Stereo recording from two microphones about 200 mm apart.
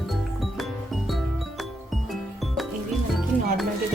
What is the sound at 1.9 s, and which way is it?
Music, centre (ahead or behind).